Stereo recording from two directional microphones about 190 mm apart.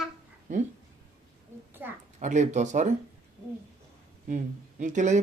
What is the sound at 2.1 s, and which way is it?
Speech, 40° right (ahead or behind).